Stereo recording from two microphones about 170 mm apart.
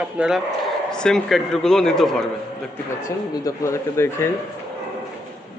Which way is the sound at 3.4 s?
15° left (ahead or behind).